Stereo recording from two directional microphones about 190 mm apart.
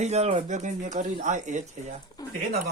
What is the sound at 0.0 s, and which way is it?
Speech, 35° right (ahead or behind).